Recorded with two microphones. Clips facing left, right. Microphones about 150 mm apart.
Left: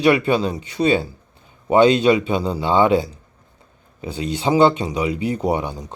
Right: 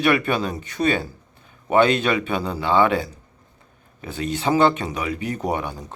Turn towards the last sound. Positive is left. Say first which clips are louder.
# left 4 dB
turn(degrees=15)  # may be behind; listen again after turning